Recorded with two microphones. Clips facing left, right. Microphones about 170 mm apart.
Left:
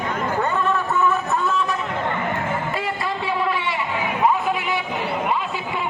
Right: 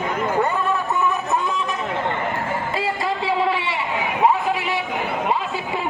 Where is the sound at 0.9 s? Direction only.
15° right (ahead or behind).